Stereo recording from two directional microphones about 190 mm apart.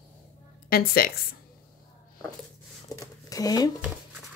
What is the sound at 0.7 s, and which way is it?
Speech, 55° left (ahead or behind).